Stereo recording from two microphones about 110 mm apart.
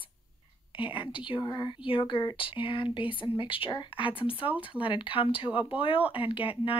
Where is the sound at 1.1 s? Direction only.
50° left (ahead or behind).